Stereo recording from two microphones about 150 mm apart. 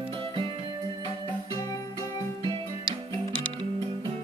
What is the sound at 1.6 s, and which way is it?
Music, 25° left (ahead or behind).